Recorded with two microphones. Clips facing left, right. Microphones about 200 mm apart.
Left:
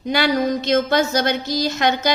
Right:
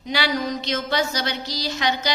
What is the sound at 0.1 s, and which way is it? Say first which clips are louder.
A woman's voice: left 6 dB; 50° left (ahead or behind).